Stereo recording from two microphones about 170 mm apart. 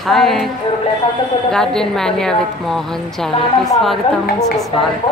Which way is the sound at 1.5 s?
5° left (ahead or behind).